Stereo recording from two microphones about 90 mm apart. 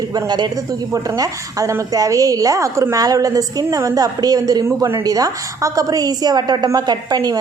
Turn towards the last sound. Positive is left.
turn(degrees=-45)  # may be behind; listen again after turning